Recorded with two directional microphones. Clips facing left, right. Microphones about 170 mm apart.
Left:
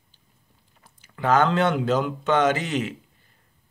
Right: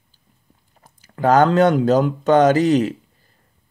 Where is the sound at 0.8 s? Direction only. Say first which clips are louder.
Right 7 dB; 40° right (ahead or behind).